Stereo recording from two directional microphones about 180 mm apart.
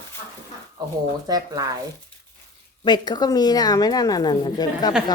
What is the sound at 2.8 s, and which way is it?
A woman's voice, 25° left (ahead or behind).